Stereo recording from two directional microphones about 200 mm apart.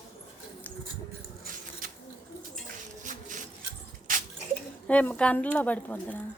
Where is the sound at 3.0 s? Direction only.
40° right (ahead or behind).